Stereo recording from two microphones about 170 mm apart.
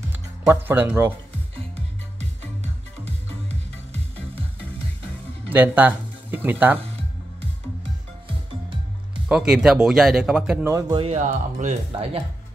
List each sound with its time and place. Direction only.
0.5 s speech: 10° right (ahead or behind)
2.1 s music: 40° right (ahead or behind)
5.5 s speech: 10° right (ahead or behind)
8.3 s music: 30° right (ahead or behind)
9.3 s speech: 5° right (ahead or behind)
11.0 s speech: 40° right (ahead or behind)